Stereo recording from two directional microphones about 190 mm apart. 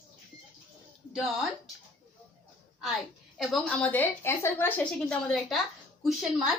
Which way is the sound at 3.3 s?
5° left (ahead or behind).